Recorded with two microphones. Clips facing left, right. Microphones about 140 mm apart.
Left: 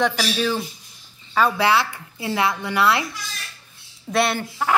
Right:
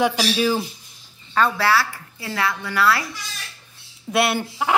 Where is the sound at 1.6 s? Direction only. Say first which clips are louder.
Left 1 dB; 20° left (ahead or behind).